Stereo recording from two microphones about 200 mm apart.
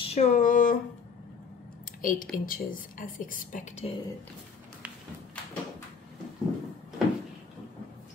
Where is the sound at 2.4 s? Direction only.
45° left (ahead or behind).